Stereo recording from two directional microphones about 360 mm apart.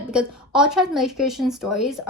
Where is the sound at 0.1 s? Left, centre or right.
Centre.